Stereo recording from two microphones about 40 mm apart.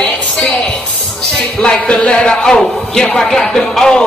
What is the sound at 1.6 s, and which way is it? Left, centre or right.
Speech, left.